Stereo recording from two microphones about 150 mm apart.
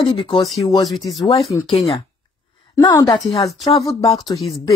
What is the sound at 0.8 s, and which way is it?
Speech, centre (ahead or behind).